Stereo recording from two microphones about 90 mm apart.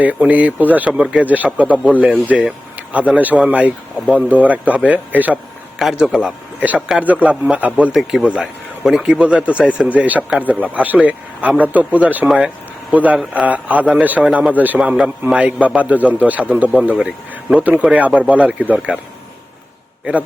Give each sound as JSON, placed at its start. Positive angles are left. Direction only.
{"t": 0.0, "sound": "a man's voice", "side_deg": -15}
{"t": 5.8, "sound": "a man's voice", "side_deg": -5}